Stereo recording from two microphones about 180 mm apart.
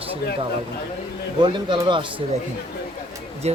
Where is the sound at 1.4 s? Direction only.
25° right (ahead or behind).